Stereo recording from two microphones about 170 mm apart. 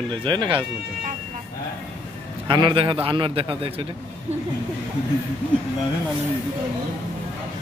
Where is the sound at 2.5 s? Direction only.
30° right (ahead or behind).